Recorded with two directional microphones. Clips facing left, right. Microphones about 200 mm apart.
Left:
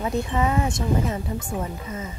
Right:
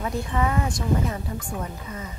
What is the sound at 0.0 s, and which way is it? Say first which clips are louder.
Speech: left 2 dB; 20° left (ahead or behind).